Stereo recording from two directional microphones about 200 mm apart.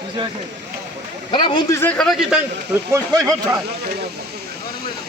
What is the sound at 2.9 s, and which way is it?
Speech, 15° right (ahead or behind).